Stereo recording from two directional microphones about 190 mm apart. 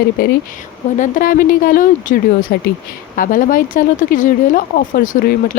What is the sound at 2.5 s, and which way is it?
Speech, 60° left (ahead or behind).